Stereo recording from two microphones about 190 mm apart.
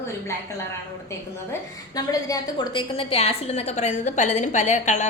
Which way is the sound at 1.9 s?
20° left (ahead or behind).